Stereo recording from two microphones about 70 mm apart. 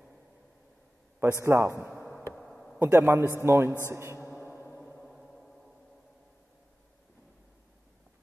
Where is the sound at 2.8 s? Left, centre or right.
Right.